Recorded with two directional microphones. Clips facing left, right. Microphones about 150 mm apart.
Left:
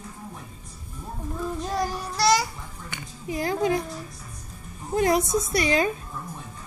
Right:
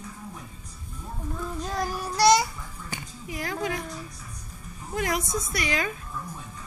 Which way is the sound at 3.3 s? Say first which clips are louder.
Left 6 dB; 25° left (ahead or behind).